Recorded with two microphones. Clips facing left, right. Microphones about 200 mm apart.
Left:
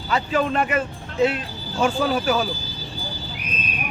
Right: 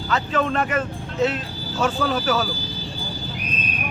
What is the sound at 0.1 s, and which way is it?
Speech, 10° left (ahead or behind).